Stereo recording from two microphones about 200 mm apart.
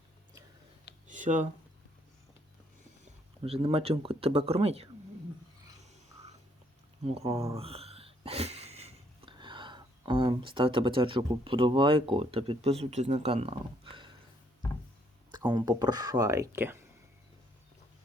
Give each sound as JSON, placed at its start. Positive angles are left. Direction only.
{"t": 1.0, "sound": "a sound", "side_deg": -40}
{"t": 3.0, "sound": "speech", "side_deg": -30}
{"t": 7.0, "sound": "speech", "side_deg": -30}
{"t": 15.3, "sound": "speech", "side_deg": -20}